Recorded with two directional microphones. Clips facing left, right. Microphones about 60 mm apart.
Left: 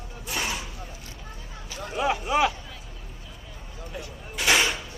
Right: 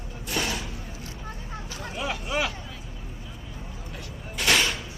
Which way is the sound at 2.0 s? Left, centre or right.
Centre.